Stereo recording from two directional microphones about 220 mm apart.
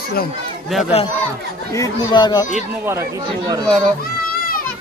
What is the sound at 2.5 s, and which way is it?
Speech, 10° right (ahead or behind).